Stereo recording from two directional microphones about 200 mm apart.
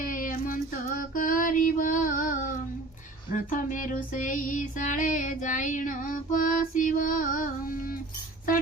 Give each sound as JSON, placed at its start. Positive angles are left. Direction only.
{"t": 0.0, "sound": "female singing", "side_deg": 45}